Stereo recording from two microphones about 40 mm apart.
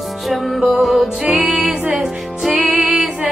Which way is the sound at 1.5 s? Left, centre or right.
Right.